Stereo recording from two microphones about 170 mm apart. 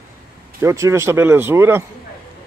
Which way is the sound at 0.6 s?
15° right (ahead or behind).